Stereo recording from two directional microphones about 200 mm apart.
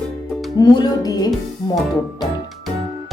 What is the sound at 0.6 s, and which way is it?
Speech, 20° left (ahead or behind).